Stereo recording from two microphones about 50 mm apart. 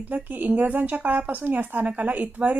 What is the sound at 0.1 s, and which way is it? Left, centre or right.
A woman's voice, right.